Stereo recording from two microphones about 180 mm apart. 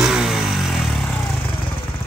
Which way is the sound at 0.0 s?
Centre (ahead or behind).